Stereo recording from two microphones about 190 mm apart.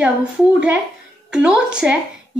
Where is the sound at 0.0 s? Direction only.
5° right (ahead or behind).